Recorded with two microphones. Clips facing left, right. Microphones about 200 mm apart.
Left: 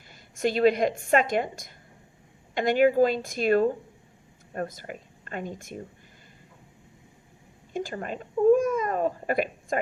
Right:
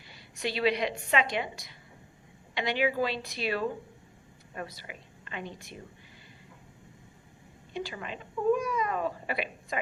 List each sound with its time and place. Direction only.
0.1 s a woman's voice: 45° left (ahead or behind)
7.7 s speech: 45° left (ahead or behind)